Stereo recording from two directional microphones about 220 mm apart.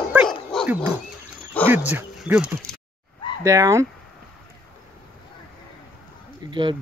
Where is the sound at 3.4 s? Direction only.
15° right (ahead or behind).